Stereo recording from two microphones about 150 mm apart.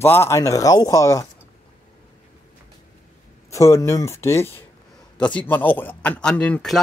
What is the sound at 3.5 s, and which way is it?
Speech, 20° left (ahead or behind).